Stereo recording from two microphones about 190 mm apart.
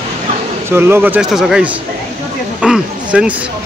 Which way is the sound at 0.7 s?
10° right (ahead or behind).